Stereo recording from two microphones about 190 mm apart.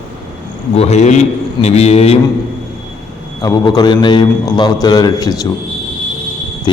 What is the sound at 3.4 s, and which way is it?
A man's voice, 20° left (ahead or behind).